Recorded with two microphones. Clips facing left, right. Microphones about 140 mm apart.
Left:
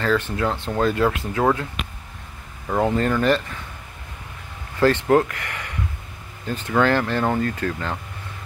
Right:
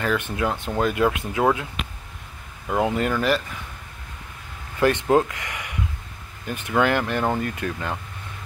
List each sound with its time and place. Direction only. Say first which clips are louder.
0.0 s speech: left 2 dB; 15° right (ahead or behind)
2.7 s speech: left 2 dB; 10° right (ahead or behind)
4.7 s speech: left 2 dB; 15° right (ahead or behind)